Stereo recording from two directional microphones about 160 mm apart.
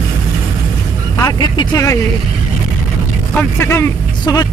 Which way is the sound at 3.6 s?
15° left (ahead or behind).